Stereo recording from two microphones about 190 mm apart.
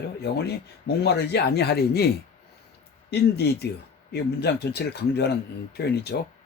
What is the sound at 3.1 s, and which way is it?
Speech, 60° left (ahead or behind).